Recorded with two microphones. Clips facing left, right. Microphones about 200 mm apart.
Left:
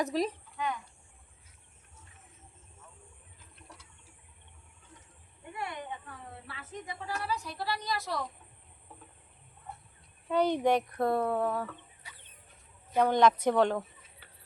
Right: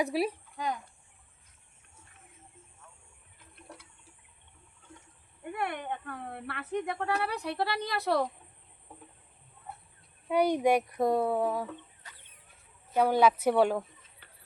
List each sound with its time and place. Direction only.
0.0 s speech: 10° right (ahead or behind)
0.5 s speech: 35° right (ahead or behind)
5.5 s speech: 60° right (ahead or behind)
10.2 s speech: 10° right (ahead or behind)
12.0 s chicken: 10° left (ahead or behind)
13.0 s speech: 10° right (ahead or behind)